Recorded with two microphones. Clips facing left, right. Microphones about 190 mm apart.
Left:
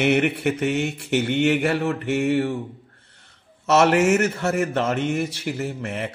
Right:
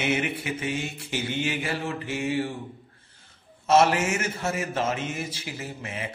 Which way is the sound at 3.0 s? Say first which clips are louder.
Even; 70° left (ahead or behind).